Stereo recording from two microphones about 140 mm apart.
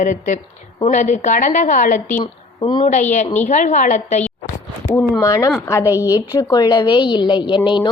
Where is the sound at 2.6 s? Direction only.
35° left (ahead or behind).